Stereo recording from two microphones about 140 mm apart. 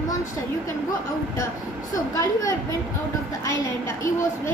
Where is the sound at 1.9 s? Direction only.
25° left (ahead or behind).